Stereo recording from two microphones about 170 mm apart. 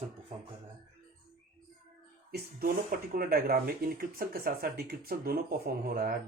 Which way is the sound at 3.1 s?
60° right (ahead or behind).